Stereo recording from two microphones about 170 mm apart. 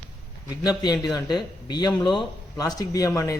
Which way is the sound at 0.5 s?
20° left (ahead or behind).